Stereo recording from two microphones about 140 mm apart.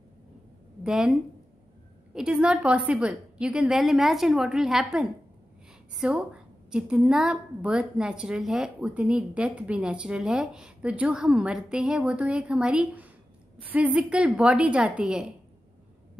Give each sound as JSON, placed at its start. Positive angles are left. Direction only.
{"t": 0.8, "sound": "a woman's voice", "side_deg": -5}
{"t": 2.1, "sound": "a woman's voice", "side_deg": -5}